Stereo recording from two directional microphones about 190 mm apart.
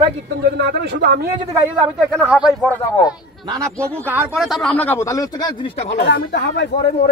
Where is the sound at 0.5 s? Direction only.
60° right (ahead or behind).